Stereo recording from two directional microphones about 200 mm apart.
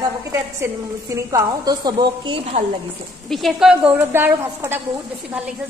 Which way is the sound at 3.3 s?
Centre (ahead or behind).